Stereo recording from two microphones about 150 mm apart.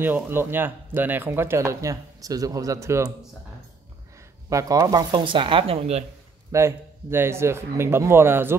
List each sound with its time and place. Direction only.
0.0 s speech: 15° right (ahead or behind)
4.5 s speech: 20° right (ahead or behind); by 6.0 s 40° right (ahead or behind)
6.5 s speech: 15° right (ahead or behind)